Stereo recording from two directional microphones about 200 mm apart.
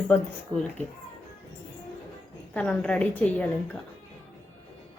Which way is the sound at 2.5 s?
5° left (ahead or behind).